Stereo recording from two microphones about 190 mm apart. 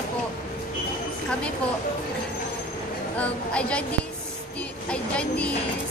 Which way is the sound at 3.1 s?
5° left (ahead or behind).